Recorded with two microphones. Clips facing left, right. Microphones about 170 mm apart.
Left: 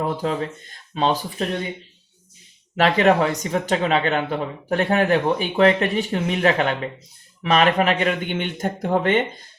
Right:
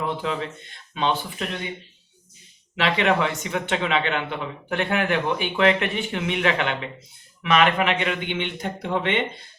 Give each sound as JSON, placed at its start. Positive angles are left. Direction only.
{"t": 0.0, "sound": "speech", "side_deg": 40}
{"t": 2.7, "sound": "speech", "side_deg": 40}